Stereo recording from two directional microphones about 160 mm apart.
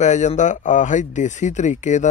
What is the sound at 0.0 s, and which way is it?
Speech, 50° left (ahead or behind).